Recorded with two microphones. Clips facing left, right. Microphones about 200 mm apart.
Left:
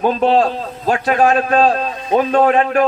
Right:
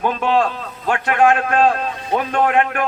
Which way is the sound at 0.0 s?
35° left (ahead or behind).